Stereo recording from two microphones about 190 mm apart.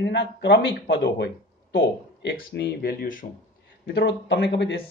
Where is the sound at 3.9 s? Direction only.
65° left (ahead or behind).